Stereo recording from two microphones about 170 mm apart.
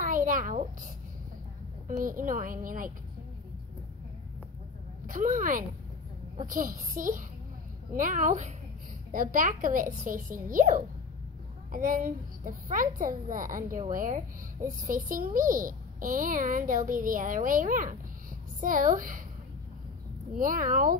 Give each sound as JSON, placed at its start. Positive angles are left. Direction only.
{"t": 0.0, "sound": "a sound", "side_deg": -50}
{"t": 1.9, "sound": "a woman's voice", "side_deg": -50}
{"t": 5.0, "sound": "a woman's voice", "side_deg": -50}
{"t": 20.3, "sound": "a woman's voice", "side_deg": -50}